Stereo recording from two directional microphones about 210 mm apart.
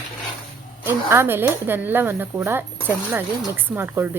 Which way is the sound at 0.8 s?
10° right (ahead or behind).